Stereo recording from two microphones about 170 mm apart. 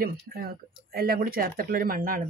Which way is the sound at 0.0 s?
60° right (ahead or behind).